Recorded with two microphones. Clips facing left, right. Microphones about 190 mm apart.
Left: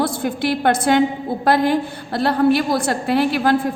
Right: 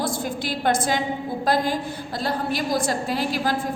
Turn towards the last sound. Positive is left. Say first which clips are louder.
# left 7 dB
turn(degrees=60)  # may be behind; listen again after turning